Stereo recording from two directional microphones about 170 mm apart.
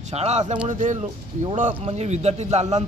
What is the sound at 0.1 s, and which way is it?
A man's voice, 40° right (ahead or behind).